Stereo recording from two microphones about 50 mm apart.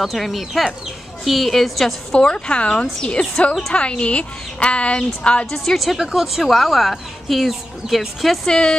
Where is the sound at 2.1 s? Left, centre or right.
Centre.